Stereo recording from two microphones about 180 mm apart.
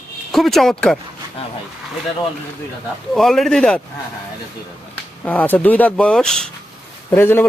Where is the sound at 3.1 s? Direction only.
Centre (ahead or behind).